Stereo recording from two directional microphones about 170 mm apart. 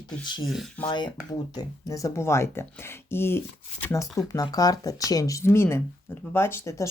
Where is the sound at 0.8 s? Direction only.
25° left (ahead or behind).